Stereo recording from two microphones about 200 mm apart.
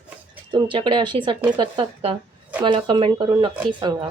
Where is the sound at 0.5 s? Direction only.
25° right (ahead or behind).